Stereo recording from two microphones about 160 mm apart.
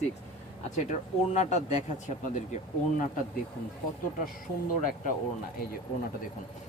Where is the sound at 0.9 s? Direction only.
50° left (ahead or behind).